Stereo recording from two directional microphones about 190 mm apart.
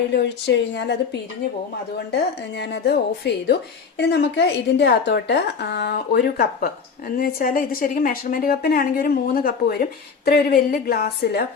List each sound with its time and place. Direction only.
0.1 s speech: 65° left (ahead or behind)
2.1 s speech: 60° left (ahead or behind)